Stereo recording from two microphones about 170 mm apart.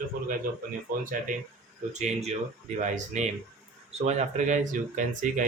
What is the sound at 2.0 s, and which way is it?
Speech, 40° right (ahead or behind).